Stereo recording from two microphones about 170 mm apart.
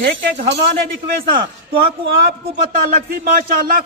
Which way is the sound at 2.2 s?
55° right (ahead or behind).